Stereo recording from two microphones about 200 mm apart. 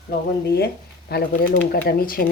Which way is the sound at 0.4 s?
55° left (ahead or behind).